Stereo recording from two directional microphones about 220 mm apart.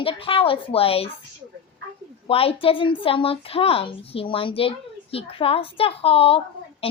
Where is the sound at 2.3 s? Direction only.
25° left (ahead or behind).